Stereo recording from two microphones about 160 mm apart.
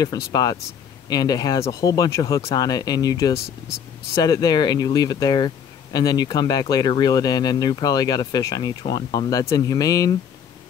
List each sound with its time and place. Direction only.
0.0 s speech: 25° left (ahead or behind)